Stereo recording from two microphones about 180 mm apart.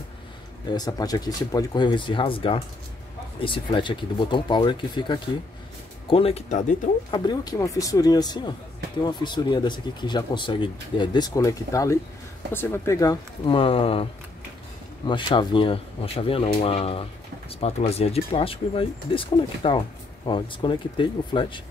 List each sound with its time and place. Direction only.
0.7 s speech: 20° left (ahead or behind); by 6.8 s 40° left (ahead or behind)
7.1 s speech: 25° left (ahead or behind)
15.0 s speech: 25° left (ahead or behind)